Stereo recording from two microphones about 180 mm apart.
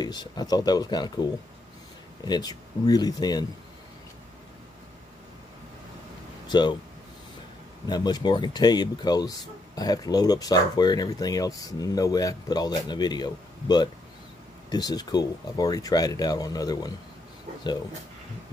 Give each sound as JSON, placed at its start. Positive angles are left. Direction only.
{"t": 0.0, "sound": "speech", "side_deg": 25}
{"t": 6.4, "sound": "speech", "side_deg": 25}
{"t": 7.9, "sound": "speech", "side_deg": 25}